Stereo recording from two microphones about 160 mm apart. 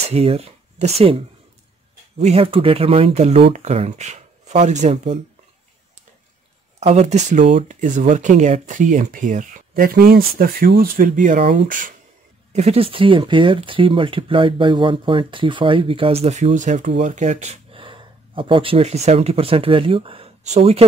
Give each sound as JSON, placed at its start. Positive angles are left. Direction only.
{"t": 0.0, "sound": "speech", "side_deg": -40}
{"t": 2.1, "sound": "speech", "side_deg": -40}
{"t": 6.8, "sound": "speech", "side_deg": -40}
{"t": 10.8, "sound": "speech", "side_deg": -55}
{"t": 12.5, "sound": "speech", "side_deg": -40}